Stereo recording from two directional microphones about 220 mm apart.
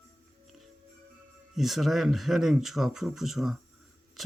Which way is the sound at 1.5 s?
Centre (ahead or behind).